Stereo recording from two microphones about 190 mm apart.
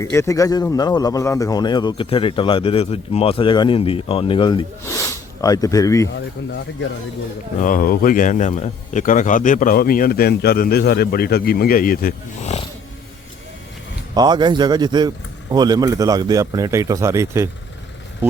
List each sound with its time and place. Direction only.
0.0 s a man's voice: 15° left (ahead or behind)
7.6 s speech: 45° left (ahead or behind)
14.1 s speech: 20° right (ahead or behind)